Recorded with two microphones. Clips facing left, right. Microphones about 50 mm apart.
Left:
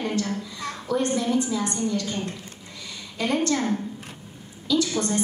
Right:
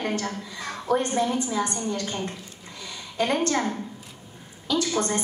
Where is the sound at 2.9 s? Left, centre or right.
Right.